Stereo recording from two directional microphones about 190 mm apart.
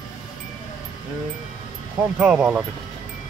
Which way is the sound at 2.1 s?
5° right (ahead or behind).